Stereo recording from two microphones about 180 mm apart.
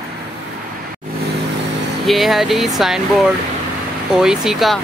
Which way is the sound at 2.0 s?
Centre (ahead or behind).